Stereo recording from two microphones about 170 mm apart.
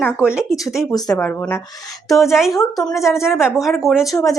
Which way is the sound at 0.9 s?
20° left (ahead or behind).